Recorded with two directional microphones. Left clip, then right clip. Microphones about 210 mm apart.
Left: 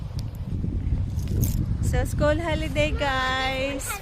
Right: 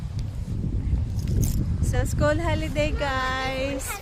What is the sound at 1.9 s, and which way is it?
Speech, centre (ahead or behind).